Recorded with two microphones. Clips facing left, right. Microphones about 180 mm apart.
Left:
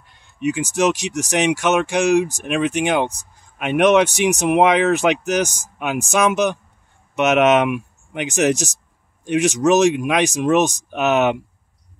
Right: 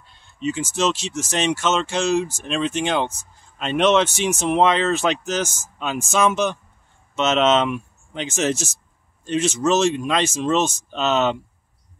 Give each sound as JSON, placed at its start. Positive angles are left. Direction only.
{"t": 0.0, "sound": "speech", "side_deg": 15}